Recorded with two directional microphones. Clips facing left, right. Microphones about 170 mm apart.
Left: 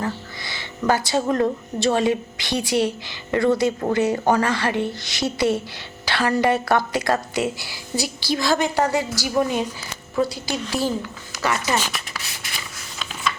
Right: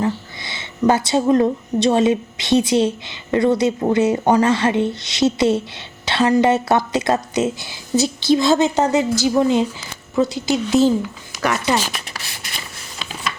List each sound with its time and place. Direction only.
0.0 s speech: 20° right (ahead or behind)